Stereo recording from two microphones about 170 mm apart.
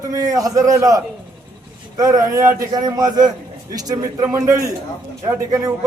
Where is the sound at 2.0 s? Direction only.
20° right (ahead or behind).